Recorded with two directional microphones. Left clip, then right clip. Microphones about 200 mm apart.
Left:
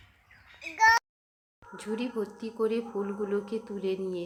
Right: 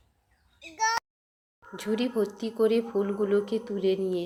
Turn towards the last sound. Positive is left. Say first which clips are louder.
# right 5 dB
turn(degrees=-10)  # may be behind; listen again after turning